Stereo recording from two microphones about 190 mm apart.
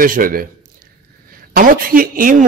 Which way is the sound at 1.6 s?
50° right (ahead or behind).